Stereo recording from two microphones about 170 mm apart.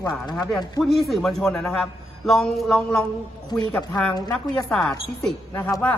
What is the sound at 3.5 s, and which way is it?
Speech, 20° left (ahead or behind).